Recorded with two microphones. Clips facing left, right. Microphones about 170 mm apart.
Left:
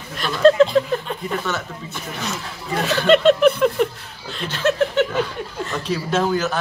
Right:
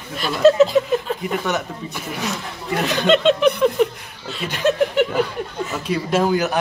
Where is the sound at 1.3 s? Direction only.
15° right (ahead or behind).